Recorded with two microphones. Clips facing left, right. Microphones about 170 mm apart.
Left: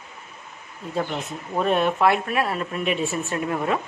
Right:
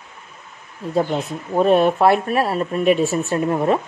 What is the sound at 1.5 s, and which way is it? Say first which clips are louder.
Speech: right 7 dB; 40° right (ahead or behind).